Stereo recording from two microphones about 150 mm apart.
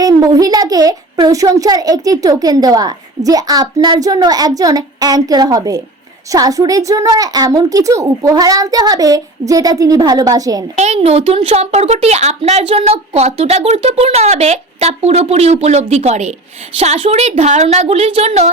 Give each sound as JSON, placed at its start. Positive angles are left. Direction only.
{"t": 0.0, "sound": "a child's voice", "side_deg": -25}
{"t": 10.8, "sound": "a woman's voice", "side_deg": -45}